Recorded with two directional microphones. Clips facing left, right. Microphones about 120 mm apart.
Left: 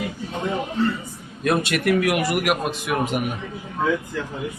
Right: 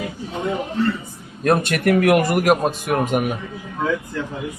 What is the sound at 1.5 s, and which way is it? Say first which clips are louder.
A man's voice: right 3 dB; 45° right (ahead or behind).